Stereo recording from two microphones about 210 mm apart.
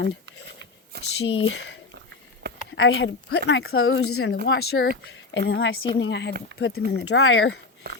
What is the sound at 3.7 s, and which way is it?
Speech, 75° left (ahead or behind).